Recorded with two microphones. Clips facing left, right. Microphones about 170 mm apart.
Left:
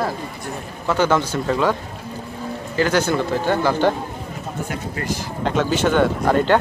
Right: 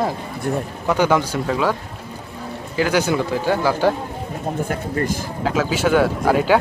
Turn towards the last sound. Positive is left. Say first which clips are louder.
# even
turn(degrees=-5)  # may be behind; listen again after turning